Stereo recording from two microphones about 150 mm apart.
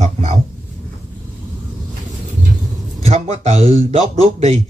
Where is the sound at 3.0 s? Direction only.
45° right (ahead or behind).